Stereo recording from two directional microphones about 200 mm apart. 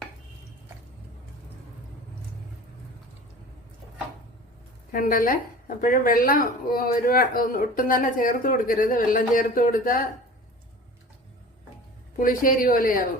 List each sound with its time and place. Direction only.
4.9 s a woman's voice: 45° left (ahead or behind)
12.2 s a woman's voice: 45° left (ahead or behind)